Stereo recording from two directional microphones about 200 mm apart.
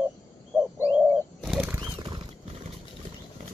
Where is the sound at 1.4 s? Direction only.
5° right (ahead or behind).